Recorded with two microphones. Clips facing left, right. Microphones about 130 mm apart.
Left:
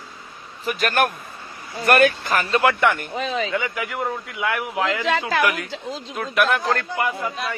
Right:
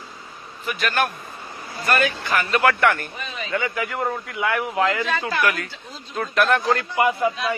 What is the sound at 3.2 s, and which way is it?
Speech, 90° left.